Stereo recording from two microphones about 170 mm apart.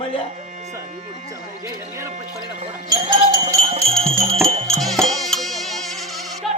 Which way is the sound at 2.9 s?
25° right (ahead or behind).